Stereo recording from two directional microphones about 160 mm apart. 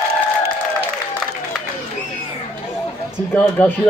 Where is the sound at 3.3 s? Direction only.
10° left (ahead or behind).